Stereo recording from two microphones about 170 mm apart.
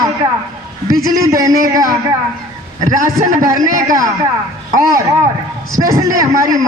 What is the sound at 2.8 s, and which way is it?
Speech, 45° right (ahead or behind).